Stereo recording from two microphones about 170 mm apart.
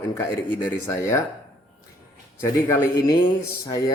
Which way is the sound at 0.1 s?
15° left (ahead or behind).